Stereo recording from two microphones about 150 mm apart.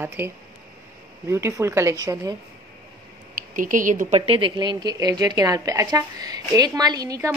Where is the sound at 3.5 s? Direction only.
60° right (ahead or behind).